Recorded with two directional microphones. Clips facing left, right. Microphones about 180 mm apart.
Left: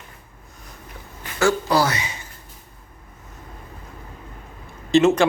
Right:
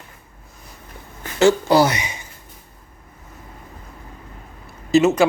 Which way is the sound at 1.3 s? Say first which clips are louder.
Right 5 dB; 25° right (ahead or behind).